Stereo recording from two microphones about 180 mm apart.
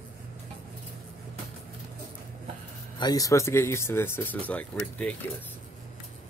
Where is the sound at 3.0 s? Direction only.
20° left (ahead or behind).